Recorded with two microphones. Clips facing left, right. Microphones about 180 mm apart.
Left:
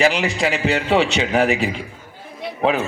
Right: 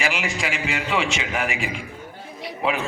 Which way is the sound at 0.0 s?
35° left (ahead or behind).